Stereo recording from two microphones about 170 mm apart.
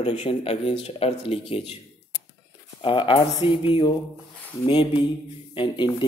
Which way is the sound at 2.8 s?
30° left (ahead or behind).